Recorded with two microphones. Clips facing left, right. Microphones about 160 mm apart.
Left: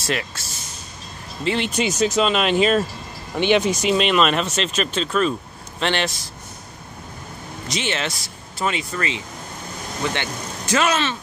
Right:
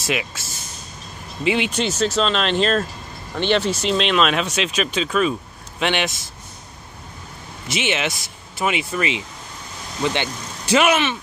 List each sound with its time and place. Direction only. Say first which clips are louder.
0.0 s speech: right 1 dB; 5° right (ahead or behind)
1.8 s speech: left 1 dB; 10° left (ahead or behind); by 6.1 s 10° right (ahead or behind)
7.7 s speech: right 3 dB; 20° right (ahead or behind)
10.7 s speech: right 3 dB; 15° right (ahead or behind)